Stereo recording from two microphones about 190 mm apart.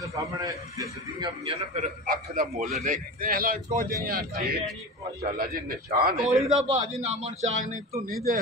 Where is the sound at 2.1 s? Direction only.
50° right (ahead or behind).